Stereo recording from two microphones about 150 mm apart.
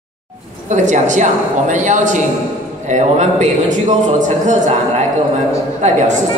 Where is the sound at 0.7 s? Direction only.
55° right (ahead or behind).